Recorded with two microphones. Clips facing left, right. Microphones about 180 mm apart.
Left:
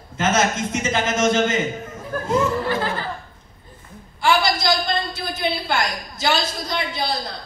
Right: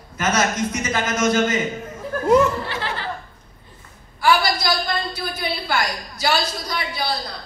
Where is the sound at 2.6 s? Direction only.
45° left (ahead or behind).